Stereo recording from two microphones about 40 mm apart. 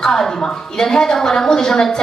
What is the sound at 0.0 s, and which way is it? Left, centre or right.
A woman's voice, centre.